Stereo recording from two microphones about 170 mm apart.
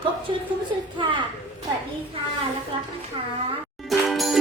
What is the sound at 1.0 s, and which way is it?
Speech, 30° right (ahead or behind).